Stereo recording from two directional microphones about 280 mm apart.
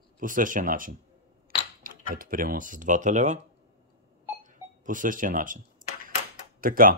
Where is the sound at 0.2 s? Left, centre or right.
Right.